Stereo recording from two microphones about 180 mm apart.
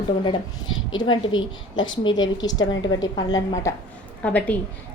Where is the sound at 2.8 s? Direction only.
20° left (ahead or behind).